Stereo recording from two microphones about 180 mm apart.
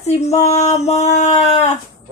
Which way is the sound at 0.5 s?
35° left (ahead or behind).